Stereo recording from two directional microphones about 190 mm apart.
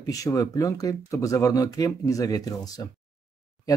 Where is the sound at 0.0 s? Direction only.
20° left (ahead or behind).